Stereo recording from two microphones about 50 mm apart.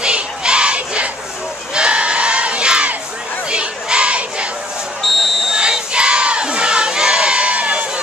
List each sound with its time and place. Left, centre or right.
0.0 s battle cry: centre
1.7 s crowd: centre
5.0 s a sound: centre
5.5 s crowd: centre